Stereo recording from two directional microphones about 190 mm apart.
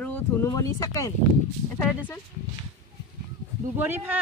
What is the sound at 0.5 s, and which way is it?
Speech, 20° left (ahead or behind).